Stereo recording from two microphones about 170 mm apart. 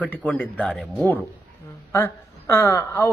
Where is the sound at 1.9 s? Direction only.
15° left (ahead or behind).